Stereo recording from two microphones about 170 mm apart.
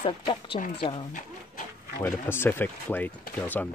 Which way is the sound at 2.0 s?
15° left (ahead or behind).